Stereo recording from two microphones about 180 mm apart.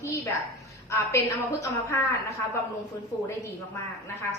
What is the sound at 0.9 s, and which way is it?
Speech, 15° left (ahead or behind).